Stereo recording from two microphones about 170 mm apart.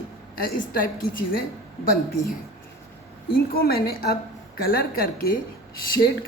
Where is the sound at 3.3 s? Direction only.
60° left (ahead or behind).